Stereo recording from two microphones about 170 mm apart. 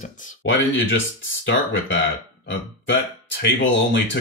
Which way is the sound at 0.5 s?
90° left.